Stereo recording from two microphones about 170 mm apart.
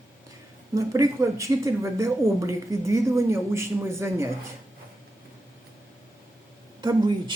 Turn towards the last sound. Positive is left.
turn(degrees=-25)  # may be behind; listen again after turning